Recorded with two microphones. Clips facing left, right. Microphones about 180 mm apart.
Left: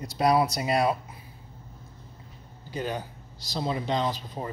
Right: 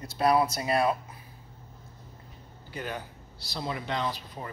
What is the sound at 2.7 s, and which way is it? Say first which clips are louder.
Speech: left 5 dB; 20° left (ahead or behind).